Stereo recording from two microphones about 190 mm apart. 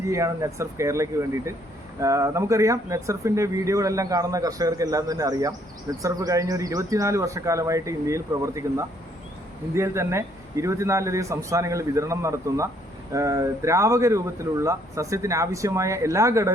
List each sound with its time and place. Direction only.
0.0 s speech: 15° right (ahead or behind)